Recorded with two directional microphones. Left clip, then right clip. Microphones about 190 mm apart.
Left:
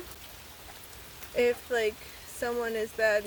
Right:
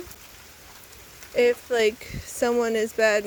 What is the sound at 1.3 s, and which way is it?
Speech, 45° right (ahead or behind).